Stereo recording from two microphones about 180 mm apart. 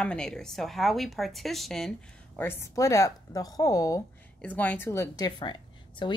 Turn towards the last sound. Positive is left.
turn(degrees=25)  # may be behind; listen again after turning